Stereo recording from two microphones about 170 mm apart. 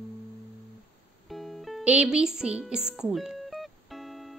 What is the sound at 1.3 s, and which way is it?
Music, centre (ahead or behind).